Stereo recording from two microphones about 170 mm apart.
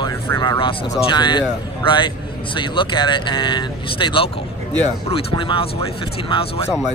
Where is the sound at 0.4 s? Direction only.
30° left (ahead or behind).